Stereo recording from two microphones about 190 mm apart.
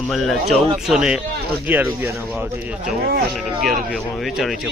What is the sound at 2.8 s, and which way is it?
Speech, 50° right (ahead or behind).